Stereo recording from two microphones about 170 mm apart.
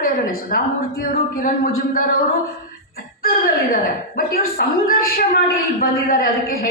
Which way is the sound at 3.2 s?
55° left (ahead or behind).